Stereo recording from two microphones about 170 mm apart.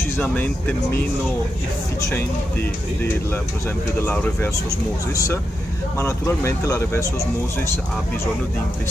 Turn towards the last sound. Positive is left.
turn(degrees=15)  # may be behind; listen again after turning